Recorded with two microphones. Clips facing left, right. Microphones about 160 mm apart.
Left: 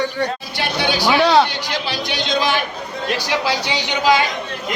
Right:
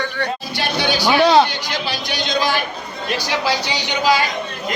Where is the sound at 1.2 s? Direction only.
20° right (ahead or behind).